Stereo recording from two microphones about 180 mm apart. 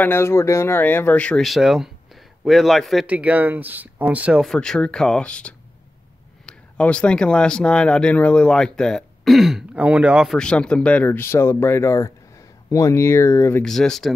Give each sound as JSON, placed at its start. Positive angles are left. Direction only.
{"t": 0.0, "sound": "speech", "side_deg": 15}
{"t": 13.7, "sound": "speech", "side_deg": 0}